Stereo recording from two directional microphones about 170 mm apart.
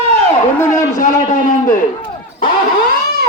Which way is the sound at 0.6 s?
15° left (ahead or behind).